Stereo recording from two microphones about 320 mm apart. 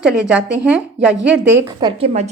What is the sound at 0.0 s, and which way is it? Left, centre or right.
Speech, centre.